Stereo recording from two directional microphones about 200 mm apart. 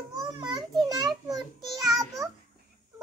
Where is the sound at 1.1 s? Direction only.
Centre (ahead or behind).